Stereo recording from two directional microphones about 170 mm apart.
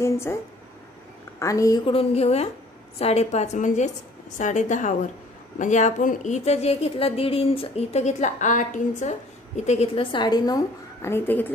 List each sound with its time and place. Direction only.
0.0 s speech: 15° left (ahead or behind)
1.4 s a woman's voice: 20° left (ahead or behind)
1.9 s a woman's voice: 35° left (ahead or behind)
9.7 s a woman's voice: 35° left (ahead or behind); by 11.5 s 10° left (ahead or behind)